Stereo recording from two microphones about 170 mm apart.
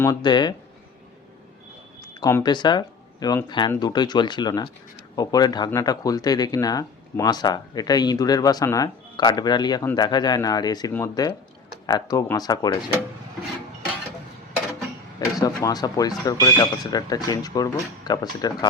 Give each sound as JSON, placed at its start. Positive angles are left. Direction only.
{"t": 0.0, "sound": "speech", "side_deg": 25}
{"t": 2.0, "sound": "speech", "side_deg": 20}
{"t": 15.4, "sound": "speech", "side_deg": 20}